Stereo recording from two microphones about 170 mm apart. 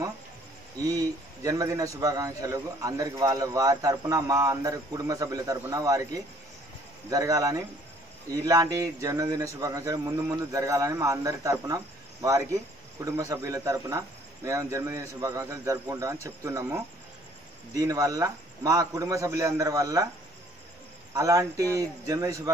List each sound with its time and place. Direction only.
0.8 s a man's voice: 20° right (ahead or behind)
21.1 s a man's voice: 20° right (ahead or behind)